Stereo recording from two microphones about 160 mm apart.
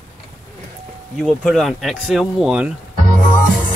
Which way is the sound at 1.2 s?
5° left (ahead or behind).